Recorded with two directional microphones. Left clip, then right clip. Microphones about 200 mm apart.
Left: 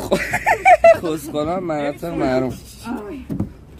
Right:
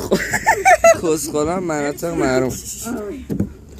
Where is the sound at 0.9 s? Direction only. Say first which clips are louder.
Right 4 dB; 10° right (ahead or behind).